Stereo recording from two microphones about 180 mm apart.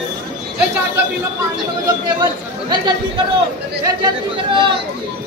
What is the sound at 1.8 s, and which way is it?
Speech, 25° right (ahead or behind).